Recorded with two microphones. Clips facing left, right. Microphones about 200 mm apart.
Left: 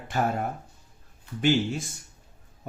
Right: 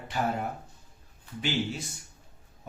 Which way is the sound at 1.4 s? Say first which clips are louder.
Left 7 dB; 50° left (ahead or behind).